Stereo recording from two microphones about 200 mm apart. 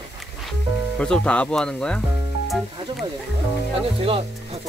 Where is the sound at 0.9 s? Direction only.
5° left (ahead or behind).